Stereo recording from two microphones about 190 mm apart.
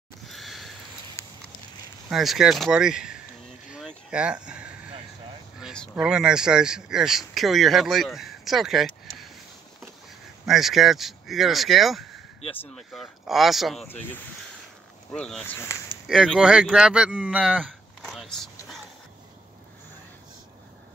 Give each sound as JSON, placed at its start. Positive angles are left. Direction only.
{"t": 0.3, "sound": "sniff", "side_deg": 0}
{"t": 1.2, "sound": "a sound", "side_deg": 15}
{"t": 2.0, "sound": "speech", "side_deg": 0}
{"t": 3.7, "sound": "a sound", "side_deg": -5}
{"t": 5.6, "sound": "speech", "side_deg": 0}
{"t": 10.4, "sound": "speech", "side_deg": 0}
{"t": 13.8, "sound": "speech", "side_deg": 10}
{"t": 16.1, "sound": "speech", "side_deg": 0}
{"t": 17.6, "sound": "a sound", "side_deg": 0}